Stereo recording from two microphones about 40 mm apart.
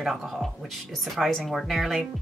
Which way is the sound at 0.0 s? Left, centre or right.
Centre.